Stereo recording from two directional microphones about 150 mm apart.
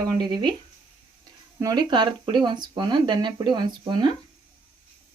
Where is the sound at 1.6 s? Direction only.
25° right (ahead or behind).